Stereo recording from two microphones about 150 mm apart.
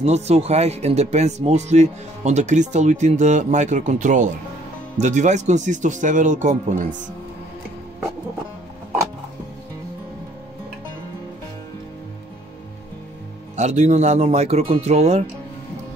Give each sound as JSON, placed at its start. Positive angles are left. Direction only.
{"t": 0.0, "sound": "speech", "side_deg": -45}
{"t": 13.6, "sound": "speech", "side_deg": -50}